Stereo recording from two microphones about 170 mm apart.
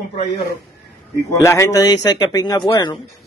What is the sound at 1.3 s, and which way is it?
A man's voice, 15° left (ahead or behind).